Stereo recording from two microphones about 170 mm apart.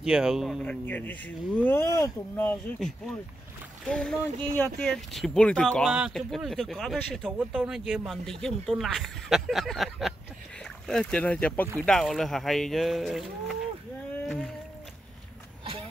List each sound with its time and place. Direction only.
0.0 s speech: 5° right (ahead or behind)
0.7 s speech: 10° left (ahead or behind)
3.8 s speech: 5° left (ahead or behind)
14.2 s rowboat: centre (ahead or behind)